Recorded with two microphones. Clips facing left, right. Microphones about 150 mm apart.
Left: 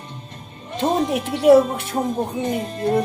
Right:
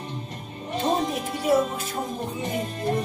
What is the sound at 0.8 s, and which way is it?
Speech, 75° left (ahead or behind).